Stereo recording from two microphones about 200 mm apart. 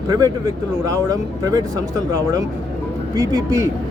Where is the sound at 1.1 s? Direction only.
15° right (ahead or behind).